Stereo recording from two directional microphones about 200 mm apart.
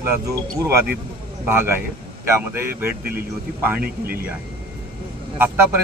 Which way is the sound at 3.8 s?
50° right (ahead or behind).